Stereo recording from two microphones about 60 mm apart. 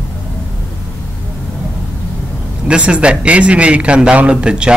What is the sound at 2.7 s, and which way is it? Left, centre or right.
Speech, centre.